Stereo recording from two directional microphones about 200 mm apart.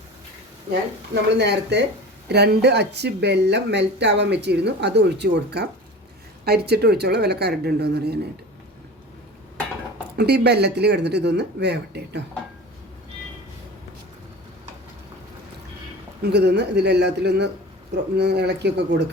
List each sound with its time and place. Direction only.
0.7 s speech: 55° right (ahead or behind)
6.7 s speech: 55° right (ahead or behind)
10.2 s speech: 55° right (ahead or behind)
16.2 s speech: 55° right (ahead or behind)